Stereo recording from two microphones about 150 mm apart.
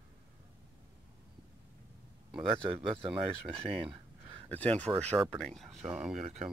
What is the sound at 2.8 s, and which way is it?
Speech, 35° right (ahead or behind).